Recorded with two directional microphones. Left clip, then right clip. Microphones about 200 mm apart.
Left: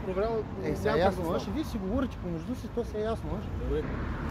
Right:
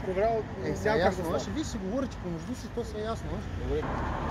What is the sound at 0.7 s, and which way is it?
Speech, 5° left (ahead or behind).